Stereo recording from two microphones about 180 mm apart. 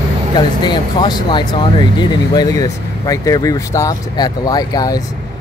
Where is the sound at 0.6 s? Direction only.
25° left (ahead or behind).